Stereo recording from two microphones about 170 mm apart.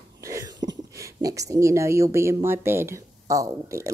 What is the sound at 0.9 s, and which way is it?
Speech, 20° right (ahead or behind).